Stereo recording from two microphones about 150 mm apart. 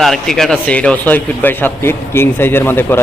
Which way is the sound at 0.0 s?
5° left (ahead or behind).